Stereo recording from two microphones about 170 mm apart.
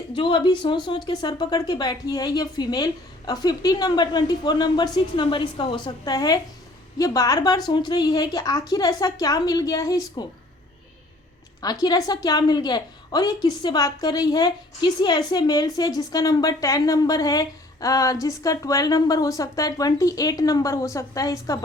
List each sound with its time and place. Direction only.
0.1 s a woman's voice: 30° left (ahead or behind)
11.6 s a woman's voice: 20° left (ahead or behind)